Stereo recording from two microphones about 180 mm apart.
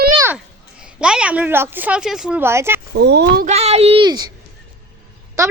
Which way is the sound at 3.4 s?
35° right (ahead or behind).